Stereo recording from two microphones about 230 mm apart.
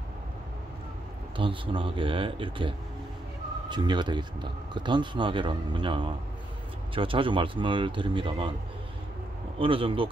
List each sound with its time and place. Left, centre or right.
1.3 s speech: right
9.6 s speech: right